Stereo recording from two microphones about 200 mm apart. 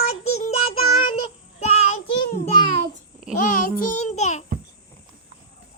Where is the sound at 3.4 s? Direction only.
45° left (ahead or behind).